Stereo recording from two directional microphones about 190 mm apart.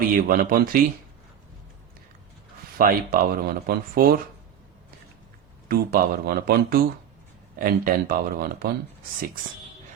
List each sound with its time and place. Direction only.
0.2 s speech: 50° right (ahead or behind)
2.7 s speech: 50° right (ahead or behind)
5.6 s speech: 55° right (ahead or behind)